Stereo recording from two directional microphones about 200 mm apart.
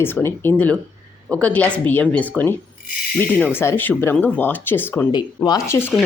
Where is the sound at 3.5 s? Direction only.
10° left (ahead or behind).